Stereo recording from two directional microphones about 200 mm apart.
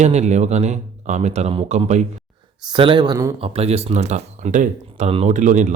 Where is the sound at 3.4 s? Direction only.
30° right (ahead or behind).